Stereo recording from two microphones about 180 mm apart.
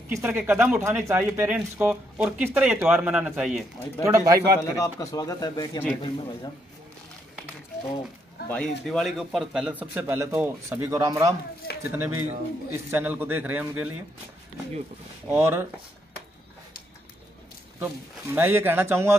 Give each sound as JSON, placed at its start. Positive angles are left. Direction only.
{"t": 0.1, "sound": "speech", "side_deg": -10}
{"t": 4.0, "sound": "speech", "side_deg": -15}
{"t": 4.6, "sound": "speech", "side_deg": 20}
{"t": 8.5, "sound": "speech", "side_deg": 5}
{"t": 15.2, "sound": "speech", "side_deg": -10}
{"t": 17.7, "sound": "speech", "side_deg": -10}